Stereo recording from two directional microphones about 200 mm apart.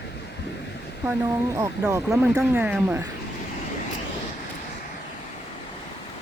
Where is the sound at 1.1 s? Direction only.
15° right (ahead or behind).